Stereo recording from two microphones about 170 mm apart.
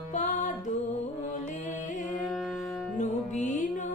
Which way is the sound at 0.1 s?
45° left (ahead or behind).